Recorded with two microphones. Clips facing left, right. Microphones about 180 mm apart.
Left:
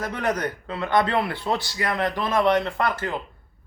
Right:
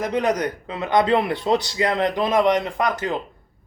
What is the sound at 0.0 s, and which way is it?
Speech, 15° right (ahead or behind).